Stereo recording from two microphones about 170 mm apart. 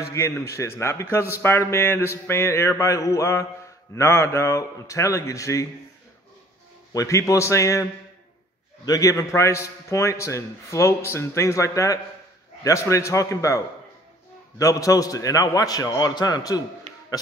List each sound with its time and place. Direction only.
0.1 s a man's voice: 15° left (ahead or behind)
6.9 s a man's voice: 20° left (ahead or behind)
8.8 s a man's voice: 20° left (ahead or behind)
14.6 s a man's voice: 20° left (ahead or behind)